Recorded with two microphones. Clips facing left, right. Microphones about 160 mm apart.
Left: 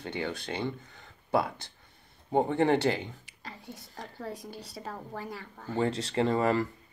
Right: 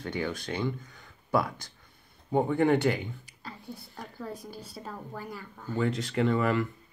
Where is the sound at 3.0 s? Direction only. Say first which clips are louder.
Right 2 dB; 90° left.